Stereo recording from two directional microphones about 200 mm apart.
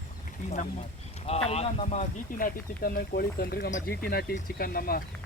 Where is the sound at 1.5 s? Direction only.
35° left (ahead or behind).